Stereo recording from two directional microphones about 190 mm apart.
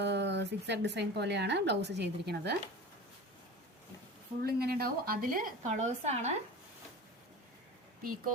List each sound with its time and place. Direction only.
0.0 s a woman's voice: 65° right (ahead or behind)
4.4 s a woman's voice: 55° right (ahead or behind); by 6.3 s 35° right (ahead or behind)